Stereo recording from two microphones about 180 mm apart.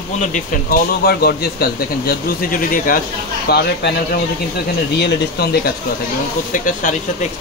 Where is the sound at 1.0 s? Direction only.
60° left (ahead or behind).